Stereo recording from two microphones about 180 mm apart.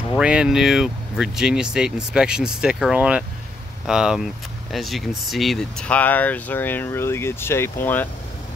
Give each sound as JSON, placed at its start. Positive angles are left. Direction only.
{"t": 0.2, "sound": "speech", "side_deg": -5}